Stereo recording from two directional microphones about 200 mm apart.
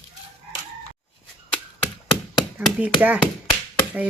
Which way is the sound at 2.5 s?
5° right (ahead or behind).